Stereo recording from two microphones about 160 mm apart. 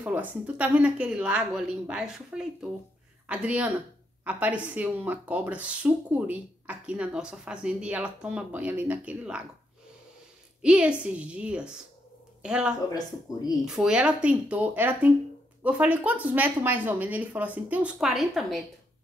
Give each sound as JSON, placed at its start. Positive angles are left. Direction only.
{"t": 0.0, "sound": "speech", "side_deg": -10}
{"t": 10.6, "sound": "a woman's voice", "side_deg": -5}